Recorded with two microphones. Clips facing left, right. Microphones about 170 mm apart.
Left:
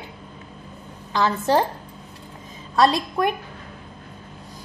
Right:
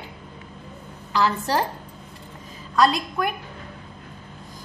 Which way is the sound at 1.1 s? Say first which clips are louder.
Left 3 dB; 20° left (ahead or behind).